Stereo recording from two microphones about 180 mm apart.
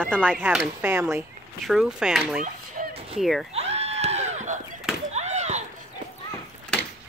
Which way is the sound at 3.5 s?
35° right (ahead or behind).